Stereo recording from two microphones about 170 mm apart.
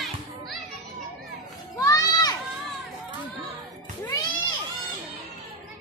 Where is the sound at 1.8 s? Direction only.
20° left (ahead or behind).